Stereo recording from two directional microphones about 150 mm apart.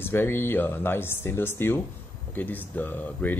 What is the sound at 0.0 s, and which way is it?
Speech, 15° left (ahead or behind).